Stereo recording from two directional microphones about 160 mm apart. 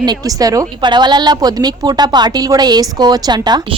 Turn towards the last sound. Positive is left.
turn(degrees=-25)  # may be behind; listen again after turning